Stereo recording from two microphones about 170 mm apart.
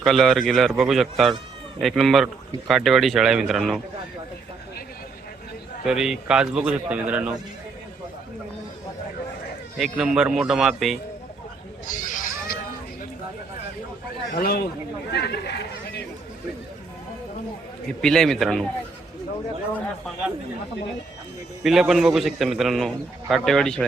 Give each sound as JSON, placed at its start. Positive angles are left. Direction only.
{"t": 0.0, "sound": "speech", "side_deg": 0}
{"t": 5.8, "sound": "a man's voice", "side_deg": -5}
{"t": 9.7, "sound": "speech", "side_deg": 0}
{"t": 11.9, "sound": "a sound", "side_deg": 50}
{"t": 14.3, "sound": "a man's voice", "side_deg": 65}
{"t": 15.1, "sound": "speech", "side_deg": 80}
{"t": 18.0, "sound": "speech", "side_deg": 5}
{"t": 21.6, "sound": "speech", "side_deg": 0}